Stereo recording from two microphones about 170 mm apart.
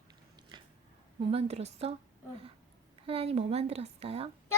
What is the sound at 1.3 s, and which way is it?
Speech, 40° right (ahead or behind).